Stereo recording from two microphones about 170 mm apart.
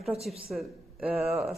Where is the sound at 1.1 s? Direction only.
35° right (ahead or behind).